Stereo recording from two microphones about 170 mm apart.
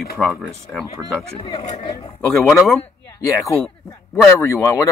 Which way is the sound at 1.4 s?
35° left (ahead or behind).